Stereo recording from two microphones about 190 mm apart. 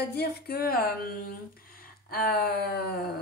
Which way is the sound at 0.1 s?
55° left (ahead or behind).